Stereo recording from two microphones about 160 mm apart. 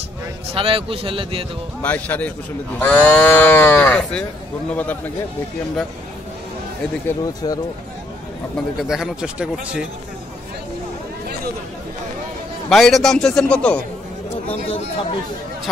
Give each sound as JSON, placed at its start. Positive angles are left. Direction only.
{"t": 0.5, "sound": "a man's voice", "side_deg": -35}
{"t": 1.8, "sound": "speech", "side_deg": 10}
{"t": 7.1, "sound": "speech", "side_deg": 20}
{"t": 8.8, "sound": "speech", "side_deg": -5}
{"t": 12.6, "sound": "speech", "side_deg": 0}
{"t": 14.5, "sound": "speech", "side_deg": 35}